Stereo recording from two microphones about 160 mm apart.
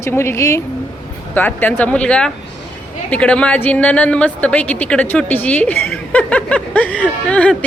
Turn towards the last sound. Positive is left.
turn(degrees=5)  # may be behind; listen again after turning